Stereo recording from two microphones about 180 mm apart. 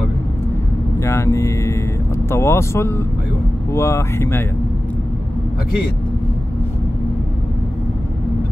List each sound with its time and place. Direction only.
1.0 s speech: 15° left (ahead or behind)